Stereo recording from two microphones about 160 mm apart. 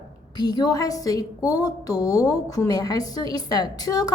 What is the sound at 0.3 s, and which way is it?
A woman's voice, 25° left (ahead or behind).